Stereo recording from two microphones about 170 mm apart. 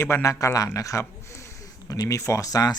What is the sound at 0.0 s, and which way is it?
A man's voice, 15° left (ahead or behind).